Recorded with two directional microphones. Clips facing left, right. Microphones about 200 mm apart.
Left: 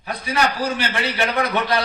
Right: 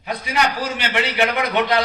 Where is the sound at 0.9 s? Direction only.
20° right (ahead or behind).